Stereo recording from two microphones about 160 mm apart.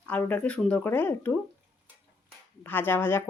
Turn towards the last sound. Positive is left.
turn(degrees=15)  # may be behind; listen again after turning